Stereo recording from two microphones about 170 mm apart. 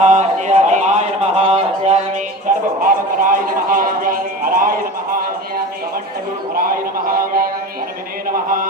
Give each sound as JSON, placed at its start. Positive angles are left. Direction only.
{"t": 0.0, "sound": "a sound", "side_deg": -40}
{"t": 2.8, "sound": "speech", "side_deg": -55}
{"t": 6.7, "sound": "speech", "side_deg": -60}